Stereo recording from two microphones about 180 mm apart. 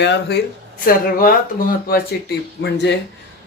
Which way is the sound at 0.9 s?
50° left (ahead or behind).